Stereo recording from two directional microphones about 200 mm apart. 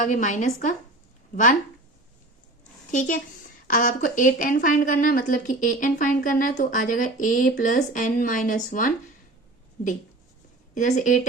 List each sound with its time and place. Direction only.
0.0 s a woman's voice: 40° left (ahead or behind)
2.9 s a woman's voice: 40° left (ahead or behind)